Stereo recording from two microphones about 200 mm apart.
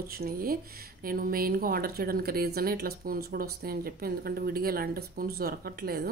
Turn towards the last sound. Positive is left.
turn(degrees=-50)  # may be behind; listen again after turning